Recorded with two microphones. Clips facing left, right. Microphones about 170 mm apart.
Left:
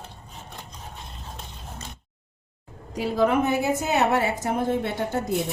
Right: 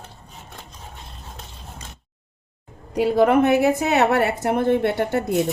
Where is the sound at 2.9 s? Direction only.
70° right (ahead or behind).